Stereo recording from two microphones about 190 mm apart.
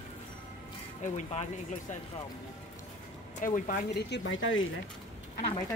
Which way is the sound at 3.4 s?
45° left (ahead or behind).